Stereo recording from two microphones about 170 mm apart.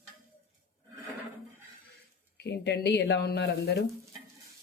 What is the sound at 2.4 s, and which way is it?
Speech, 75° left (ahead or behind).